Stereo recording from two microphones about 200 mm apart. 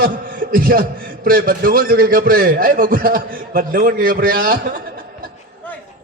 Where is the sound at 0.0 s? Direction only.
45° right (ahead or behind).